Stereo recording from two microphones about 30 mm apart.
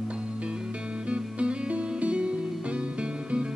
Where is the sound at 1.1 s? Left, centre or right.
Right.